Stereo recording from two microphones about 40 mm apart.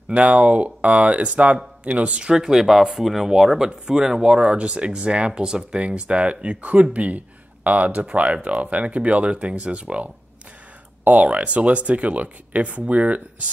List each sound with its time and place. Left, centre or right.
0.1 s speech: right
2.3 s speech: centre; by 10.0 s right
11.1 s speech: right